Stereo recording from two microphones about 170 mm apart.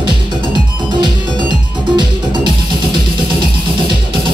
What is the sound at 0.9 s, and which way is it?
Music, 25° right (ahead or behind).